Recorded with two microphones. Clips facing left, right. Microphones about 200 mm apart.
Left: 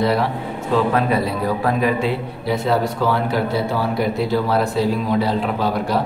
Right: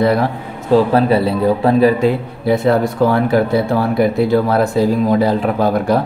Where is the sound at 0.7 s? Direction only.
35° right (ahead or behind).